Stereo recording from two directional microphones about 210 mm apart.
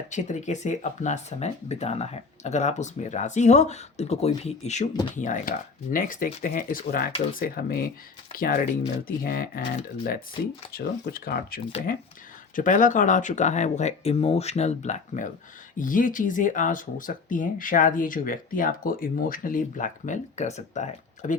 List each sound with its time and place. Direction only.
0.1 s speech: 35° left (ahead or behind)